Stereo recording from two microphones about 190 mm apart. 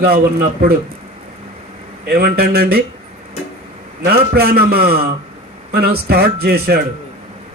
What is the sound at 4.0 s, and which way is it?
Speech, 55° right (ahead or behind).